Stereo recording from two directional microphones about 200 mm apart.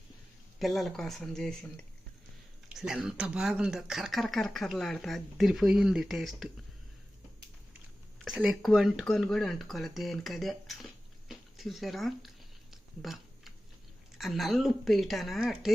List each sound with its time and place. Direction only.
0.6 s speech: centre (ahead or behind)
8.2 s speech: centre (ahead or behind)
12.7 s a sound: centre (ahead or behind)
14.2 s speech: centre (ahead or behind)